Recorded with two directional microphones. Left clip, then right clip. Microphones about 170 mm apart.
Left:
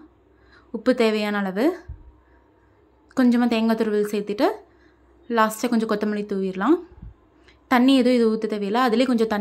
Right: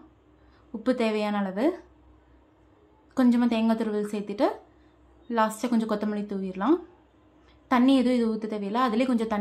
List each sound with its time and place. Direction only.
0.7 s a woman's voice: 25° left (ahead or behind)
3.2 s a woman's voice: 20° left (ahead or behind)